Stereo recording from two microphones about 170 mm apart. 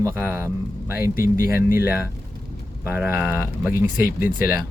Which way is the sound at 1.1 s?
60° left (ahead or behind).